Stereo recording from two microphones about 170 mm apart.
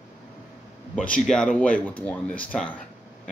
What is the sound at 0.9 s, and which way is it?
Speech, 5° left (ahead or behind).